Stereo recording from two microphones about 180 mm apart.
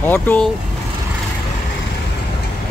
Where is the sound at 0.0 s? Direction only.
10° left (ahead or behind).